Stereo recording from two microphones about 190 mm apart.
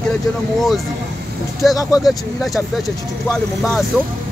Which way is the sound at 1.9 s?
Centre (ahead or behind).